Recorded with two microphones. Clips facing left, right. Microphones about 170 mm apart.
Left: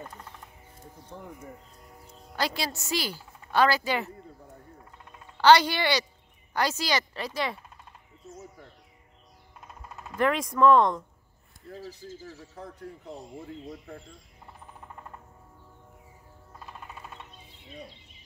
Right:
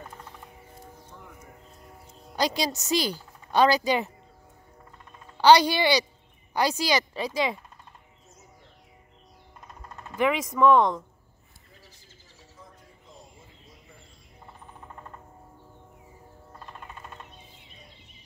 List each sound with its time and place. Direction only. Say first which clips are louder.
2.3 s a woman's voice: right 4 dB; 15° right (ahead or behind)
5.4 s a woman's voice: right 2 dB; 15° right (ahead or behind)
9.7 s speech: even; 5° left (ahead or behind)
11.7 s speech: left 17 dB; 70° left (ahead or behind)